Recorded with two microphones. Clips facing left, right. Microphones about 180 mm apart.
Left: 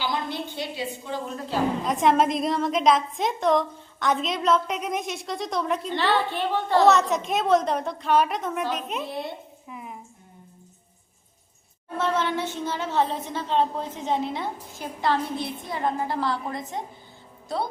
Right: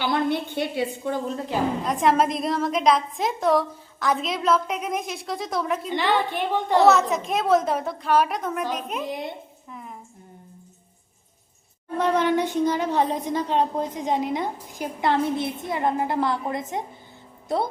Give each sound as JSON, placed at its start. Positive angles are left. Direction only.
{"t": 0.0, "sound": "a woman's voice", "side_deg": -60}
{"t": 1.8, "sound": "a woman's voice", "side_deg": 0}
{"t": 5.9, "sound": "speech", "side_deg": -15}
{"t": 6.8, "sound": "a woman's voice", "side_deg": 0}
{"t": 9.6, "sound": "a sound", "side_deg": 5}
{"t": 11.9, "sound": "speech", "side_deg": -15}